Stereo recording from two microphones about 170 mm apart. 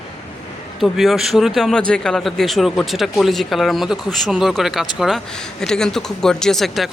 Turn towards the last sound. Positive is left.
turn(degrees=0)  # may be behind; listen again after turning